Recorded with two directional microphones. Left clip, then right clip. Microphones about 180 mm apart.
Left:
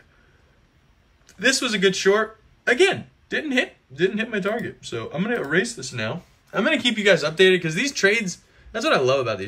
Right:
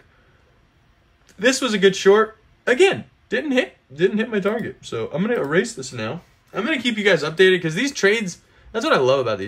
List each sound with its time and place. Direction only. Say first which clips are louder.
1.2 s speech: right 2 dB; 15° right (ahead or behind)
6.5 s speech: left 2 dB; centre (ahead or behind)